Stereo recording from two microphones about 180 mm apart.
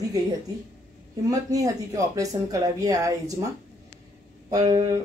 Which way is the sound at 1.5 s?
20° right (ahead or behind).